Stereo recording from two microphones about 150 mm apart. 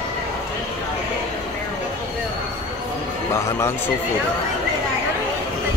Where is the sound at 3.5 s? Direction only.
15° left (ahead or behind).